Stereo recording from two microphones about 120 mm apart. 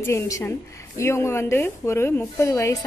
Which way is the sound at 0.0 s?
20° left (ahead or behind).